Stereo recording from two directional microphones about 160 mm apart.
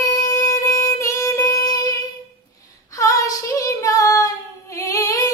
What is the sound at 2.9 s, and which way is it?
Child singing, 20° left (ahead or behind).